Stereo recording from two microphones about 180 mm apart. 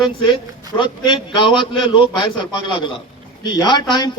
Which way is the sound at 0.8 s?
25° left (ahead or behind).